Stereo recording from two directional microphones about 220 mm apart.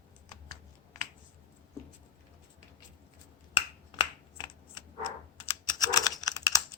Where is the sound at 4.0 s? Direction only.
20° left (ahead or behind).